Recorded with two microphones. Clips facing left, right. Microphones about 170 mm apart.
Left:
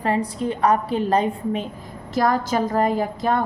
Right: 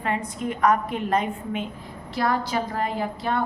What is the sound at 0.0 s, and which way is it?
A woman's voice, 35° left (ahead or behind).